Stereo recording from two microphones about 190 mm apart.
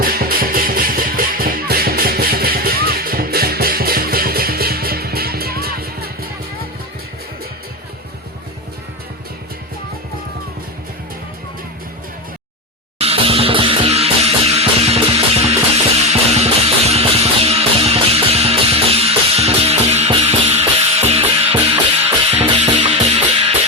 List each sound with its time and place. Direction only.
0.0 s music: 50° right (ahead or behind)
13.0 s music: 30° right (ahead or behind)